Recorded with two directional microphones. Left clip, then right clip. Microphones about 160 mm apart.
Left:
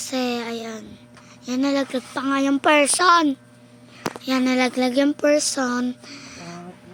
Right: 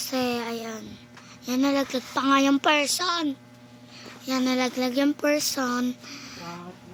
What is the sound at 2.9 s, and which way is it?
Speech, 70° left (ahead or behind).